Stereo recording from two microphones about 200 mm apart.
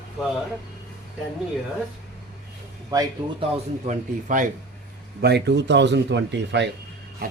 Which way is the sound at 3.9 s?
40° right (ahead or behind).